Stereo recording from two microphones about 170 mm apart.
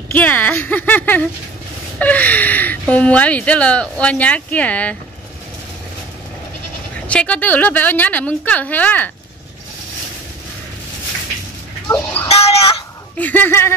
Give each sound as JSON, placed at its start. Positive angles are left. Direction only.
{"t": 0.1, "sound": "speech", "side_deg": 10}
{"t": 7.1, "sound": "speech", "side_deg": 5}
{"t": 11.9, "sound": "speech", "side_deg": 10}
{"t": 12.3, "sound": "speech", "side_deg": 35}
{"t": 13.2, "sound": "speech", "side_deg": 10}